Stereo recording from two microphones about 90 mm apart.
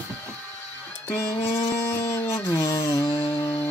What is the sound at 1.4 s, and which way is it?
Music, 90° left.